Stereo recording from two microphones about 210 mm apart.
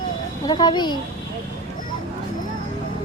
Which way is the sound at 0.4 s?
20° left (ahead or behind).